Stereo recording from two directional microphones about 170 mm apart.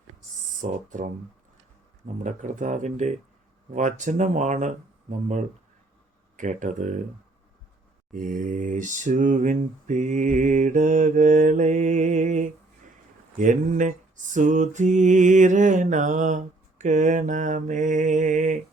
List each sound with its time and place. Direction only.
0.6 s mantra: 50° right (ahead or behind)
2.1 s mantra: 45° right (ahead or behind)
8.1 s mantra: 50° right (ahead or behind)